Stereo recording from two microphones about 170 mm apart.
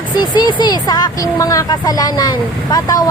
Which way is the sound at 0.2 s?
25° left (ahead or behind).